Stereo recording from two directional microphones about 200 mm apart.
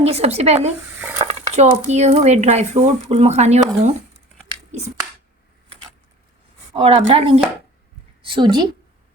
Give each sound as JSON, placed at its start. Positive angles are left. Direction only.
{"t": 0.0, "sound": "speech", "side_deg": -30}
{"t": 4.7, "sound": "speech", "side_deg": -35}
{"t": 6.7, "sound": "a woman's voice", "side_deg": -30}